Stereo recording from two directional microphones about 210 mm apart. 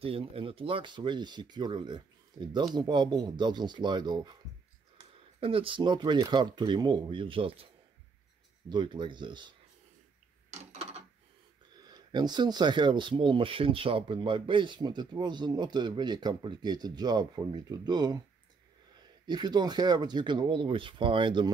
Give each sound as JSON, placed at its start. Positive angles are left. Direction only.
{"t": 0.0, "sound": "speech", "side_deg": -25}
{"t": 8.6, "sound": "speech", "side_deg": -20}
{"t": 10.5, "sound": "a sound", "side_deg": -35}
{"t": 11.8, "sound": "speech", "side_deg": -20}
{"t": 19.2, "sound": "speech", "side_deg": -20}